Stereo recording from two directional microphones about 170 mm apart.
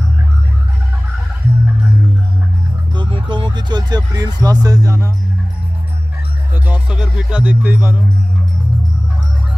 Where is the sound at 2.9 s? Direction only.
30° right (ahead or behind).